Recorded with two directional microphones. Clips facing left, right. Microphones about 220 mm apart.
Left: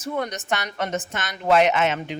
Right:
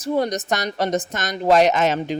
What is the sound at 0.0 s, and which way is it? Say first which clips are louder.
A woman's voice: right 6 dB; 35° right (ahead or behind).